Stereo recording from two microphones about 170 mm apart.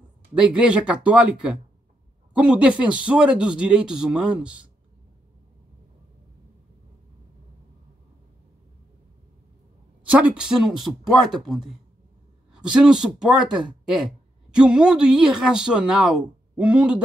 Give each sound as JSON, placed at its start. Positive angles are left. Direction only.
{"t": 0.3, "sound": "speech", "side_deg": -5}
{"t": 10.0, "sound": "speech", "side_deg": -5}